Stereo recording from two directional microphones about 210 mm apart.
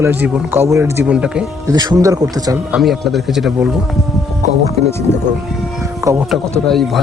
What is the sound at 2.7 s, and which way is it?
A man's voice, centre (ahead or behind).